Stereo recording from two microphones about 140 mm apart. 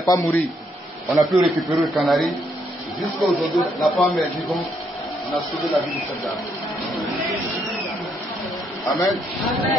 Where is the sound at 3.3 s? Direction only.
Centre (ahead or behind).